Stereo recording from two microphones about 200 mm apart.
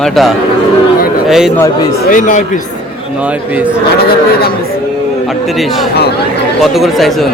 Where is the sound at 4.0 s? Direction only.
50° left (ahead or behind).